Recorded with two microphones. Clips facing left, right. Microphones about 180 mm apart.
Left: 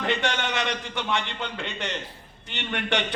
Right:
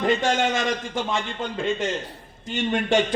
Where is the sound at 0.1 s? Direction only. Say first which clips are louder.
Right 5 dB; 65° left (ahead or behind).